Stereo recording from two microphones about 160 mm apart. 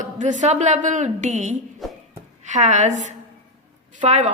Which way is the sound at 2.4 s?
50° right (ahead or behind).